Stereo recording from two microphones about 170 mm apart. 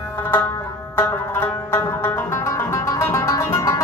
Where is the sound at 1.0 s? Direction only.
10° left (ahead or behind).